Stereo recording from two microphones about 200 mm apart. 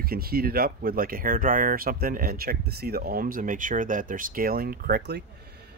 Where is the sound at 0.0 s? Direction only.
50° right (ahead or behind).